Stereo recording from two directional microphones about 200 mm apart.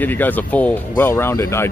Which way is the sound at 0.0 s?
10° left (ahead or behind).